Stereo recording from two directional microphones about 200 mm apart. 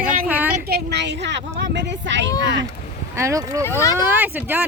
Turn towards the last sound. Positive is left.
turn(degrees=-10)  # may be behind; listen again after turning